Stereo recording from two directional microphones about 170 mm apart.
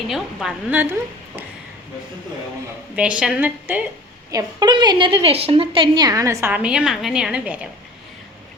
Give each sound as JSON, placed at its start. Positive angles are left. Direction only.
{"t": 0.1, "sound": "a woman's voice", "side_deg": 0}
{"t": 2.9, "sound": "a woman's voice", "side_deg": -5}
{"t": 4.3, "sound": "a woman's voice", "side_deg": -20}